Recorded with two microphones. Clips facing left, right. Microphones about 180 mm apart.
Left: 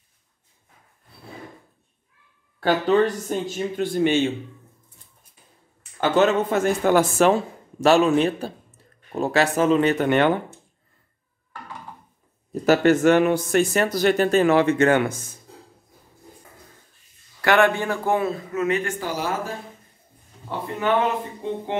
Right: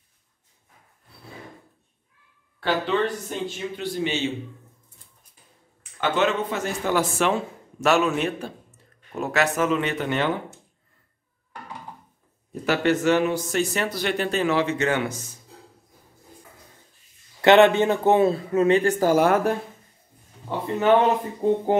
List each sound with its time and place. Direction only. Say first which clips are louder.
2.6 s speech: left 5 dB; 45° left (ahead or behind)
5.9 s speech: left 4 dB; 40° left (ahead or behind)
10.0 s speech: left 5 dB; 60° left (ahead or behind)
12.6 s speech: left 5 dB; 45° left (ahead or behind)
17.4 s a man's voice: right 4 dB; 20° right (ahead or behind); by 19.5 s 60° right (ahead or behind)
21.0 s a man's voice: right 4 dB; 40° right (ahead or behind)